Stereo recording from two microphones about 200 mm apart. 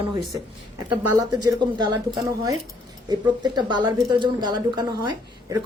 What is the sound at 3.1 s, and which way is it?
Speech, 20° right (ahead or behind).